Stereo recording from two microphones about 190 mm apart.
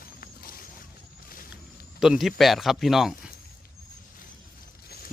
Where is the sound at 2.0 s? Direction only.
Centre (ahead or behind).